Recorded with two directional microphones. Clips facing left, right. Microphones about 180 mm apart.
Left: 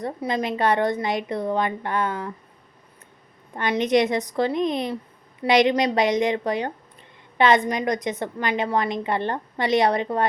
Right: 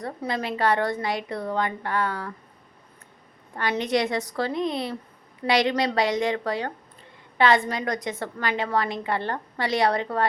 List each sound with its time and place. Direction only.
0.0 s a woman's voice: 15° left (ahead or behind)
3.5 s a woman's voice: 20° left (ahead or behind)